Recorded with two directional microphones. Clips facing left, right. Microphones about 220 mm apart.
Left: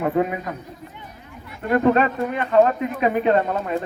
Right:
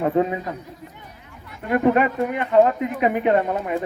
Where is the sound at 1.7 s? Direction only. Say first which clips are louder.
Even; 15° right (ahead or behind).